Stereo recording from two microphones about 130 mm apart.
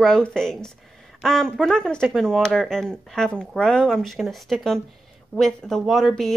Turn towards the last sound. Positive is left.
turn(degrees=0)  # may be behind; listen again after turning